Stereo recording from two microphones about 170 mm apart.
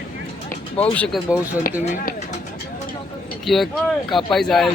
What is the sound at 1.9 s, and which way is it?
Speech, 45° left (ahead or behind).